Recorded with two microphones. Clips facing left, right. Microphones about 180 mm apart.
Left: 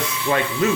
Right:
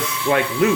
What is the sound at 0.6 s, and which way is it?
Speech, 60° right (ahead or behind).